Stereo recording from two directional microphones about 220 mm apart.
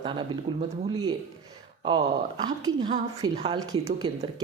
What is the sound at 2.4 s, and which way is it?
Speech, 20° right (ahead or behind).